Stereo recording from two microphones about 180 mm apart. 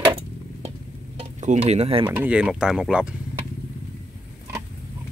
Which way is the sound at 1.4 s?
40° right (ahead or behind).